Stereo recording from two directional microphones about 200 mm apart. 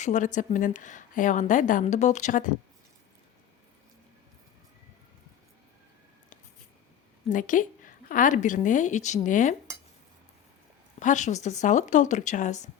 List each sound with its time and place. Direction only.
0.0 s a woman's voice: 35° left (ahead or behind)
7.3 s a woman's voice: 40° left (ahead or behind)
11.0 s a woman's voice: 35° left (ahead or behind)